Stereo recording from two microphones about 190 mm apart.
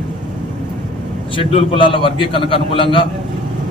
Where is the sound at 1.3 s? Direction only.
30° left (ahead or behind).